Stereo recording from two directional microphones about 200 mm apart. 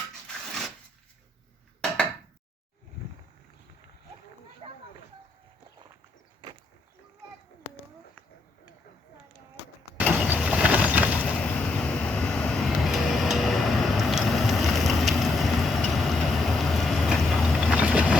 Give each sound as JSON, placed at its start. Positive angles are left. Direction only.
{"t": 4.6, "sound": "a sound", "side_deg": -30}
{"t": 10.0, "sound": "vehicle", "side_deg": 0}
{"t": 11.3, "sound": "vehicle", "side_deg": 5}